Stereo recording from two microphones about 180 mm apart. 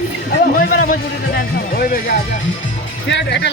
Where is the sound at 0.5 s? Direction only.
55° left (ahead or behind).